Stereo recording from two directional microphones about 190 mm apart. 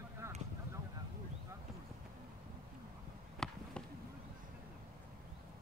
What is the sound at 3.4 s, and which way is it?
Basketball bounce, 5° left (ahead or behind).